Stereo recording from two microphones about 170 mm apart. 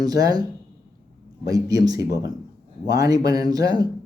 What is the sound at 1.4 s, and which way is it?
Speech, 20° right (ahead or behind).